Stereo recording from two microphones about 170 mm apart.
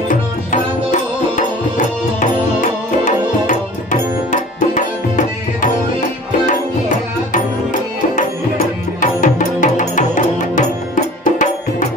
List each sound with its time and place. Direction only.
0.1 s music: 50° left (ahead or behind)
9.0 s music: 50° left (ahead or behind)